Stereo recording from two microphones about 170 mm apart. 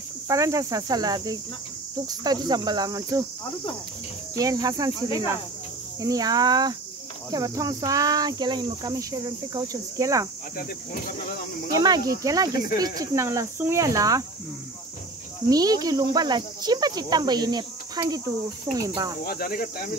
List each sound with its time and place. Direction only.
0.3 s speech: 20° right (ahead or behind)
4.4 s speech: 20° right (ahead or behind)
5.9 s speech: 20° right (ahead or behind)
11.7 s speech: 20° right (ahead or behind)
15.5 s speech: 20° right (ahead or behind)
19.2 s speech: 60° left (ahead or behind)